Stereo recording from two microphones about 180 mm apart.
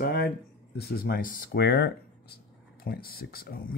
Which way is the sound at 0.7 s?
55° left (ahead or behind).